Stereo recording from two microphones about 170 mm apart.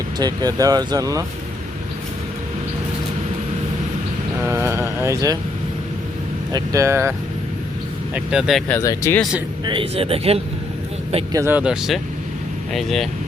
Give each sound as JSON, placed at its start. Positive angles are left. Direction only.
{"t": 0.2, "sound": "speech", "side_deg": -25}
{"t": 4.4, "sound": "speech", "side_deg": -15}
{"t": 6.5, "sound": "speech", "side_deg": -20}
{"t": 8.1, "sound": "speech", "side_deg": -5}
{"t": 8.7, "sound": "speech", "side_deg": 20}
{"t": 9.6, "sound": "speech", "side_deg": -35}
{"t": 11.3, "sound": "speech", "side_deg": -15}